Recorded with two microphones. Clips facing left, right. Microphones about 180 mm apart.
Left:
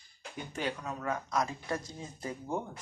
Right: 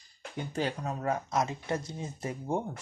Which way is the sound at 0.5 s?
35° right (ahead or behind).